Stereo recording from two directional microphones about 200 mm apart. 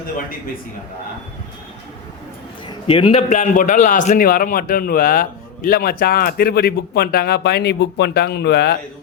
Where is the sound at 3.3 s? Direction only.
40° left (ahead or behind).